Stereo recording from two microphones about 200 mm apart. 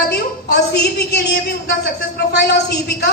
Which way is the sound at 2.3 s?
55° left (ahead or behind).